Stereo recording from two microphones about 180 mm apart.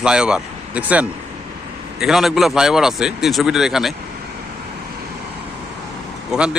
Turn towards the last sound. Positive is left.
turn(degrees=-5)  # may be behind; listen again after turning